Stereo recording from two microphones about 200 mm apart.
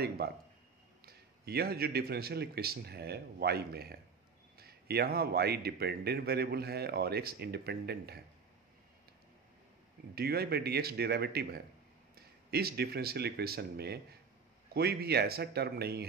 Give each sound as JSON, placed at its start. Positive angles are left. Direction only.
{"t": 1.0, "sound": "a man's voice", "side_deg": -50}
{"t": 10.1, "sound": "a man's voice", "side_deg": -50}